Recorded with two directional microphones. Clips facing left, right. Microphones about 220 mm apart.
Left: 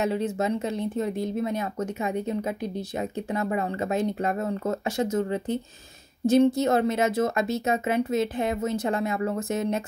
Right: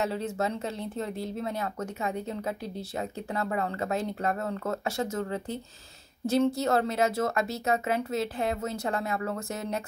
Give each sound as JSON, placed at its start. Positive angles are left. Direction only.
{"t": 0.0, "sound": "speech", "side_deg": 20}